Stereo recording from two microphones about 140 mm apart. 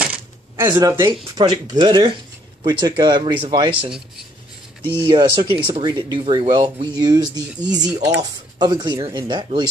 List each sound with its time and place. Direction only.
0.0 s speech: 10° right (ahead or behind); by 3.9 s 35° right (ahead or behind)
5.0 s speech: 35° right (ahead or behind)